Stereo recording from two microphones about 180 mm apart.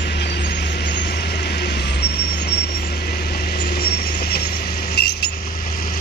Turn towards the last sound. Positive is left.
turn(degrees=65)  # may be behind; listen again after turning